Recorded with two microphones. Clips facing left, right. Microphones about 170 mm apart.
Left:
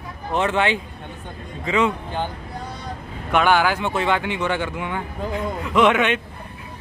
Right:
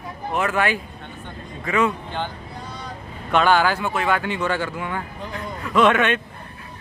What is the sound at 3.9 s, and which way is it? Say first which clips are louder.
Speech: left 1 dB; 30° left (ahead or behind).